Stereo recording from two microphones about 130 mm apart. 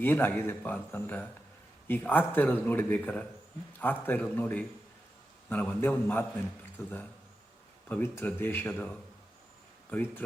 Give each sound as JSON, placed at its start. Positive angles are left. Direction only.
{"t": 0.0, "sound": "a man's voice", "side_deg": 15}